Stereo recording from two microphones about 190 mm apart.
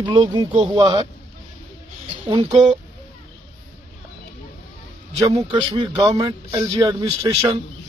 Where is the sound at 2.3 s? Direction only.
20° right (ahead or behind).